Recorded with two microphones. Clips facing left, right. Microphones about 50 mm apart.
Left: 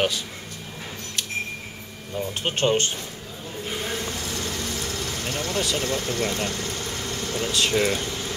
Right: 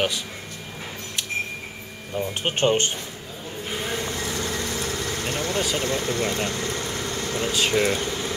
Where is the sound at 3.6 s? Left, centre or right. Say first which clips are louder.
Right 1 dB; right.